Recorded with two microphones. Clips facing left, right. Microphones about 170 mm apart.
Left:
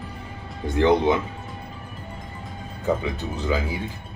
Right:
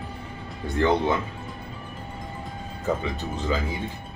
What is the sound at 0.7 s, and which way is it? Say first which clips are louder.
Speech: left 4 dB; 15° left (ahead or behind).